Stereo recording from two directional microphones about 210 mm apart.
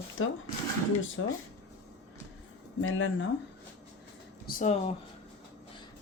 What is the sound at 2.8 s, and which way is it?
Speech, 65° left (ahead or behind).